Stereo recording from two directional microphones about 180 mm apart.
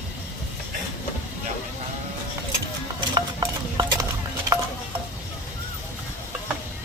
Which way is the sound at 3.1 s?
20° right (ahead or behind).